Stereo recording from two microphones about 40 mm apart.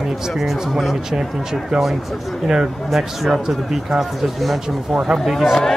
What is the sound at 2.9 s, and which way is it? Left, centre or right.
Speech, centre.